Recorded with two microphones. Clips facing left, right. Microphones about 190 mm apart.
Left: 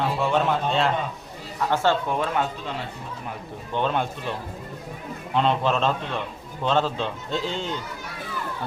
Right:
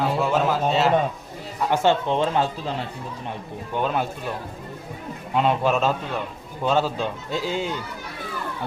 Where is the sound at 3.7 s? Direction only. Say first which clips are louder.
Even; 5° right (ahead or behind).